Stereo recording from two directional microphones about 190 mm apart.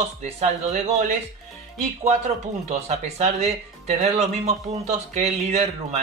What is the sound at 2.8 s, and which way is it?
Speech, 35° right (ahead or behind).